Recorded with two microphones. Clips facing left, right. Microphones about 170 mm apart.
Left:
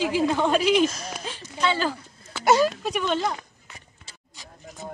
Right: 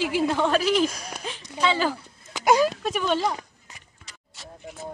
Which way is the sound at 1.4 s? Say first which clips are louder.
Right 1 dB; 15° right (ahead or behind).